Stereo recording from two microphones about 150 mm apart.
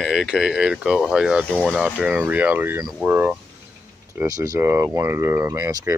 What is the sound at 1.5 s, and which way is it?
Speech, 5° left (ahead or behind).